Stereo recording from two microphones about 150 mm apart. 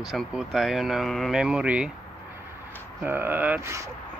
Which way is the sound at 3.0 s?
15° right (ahead or behind).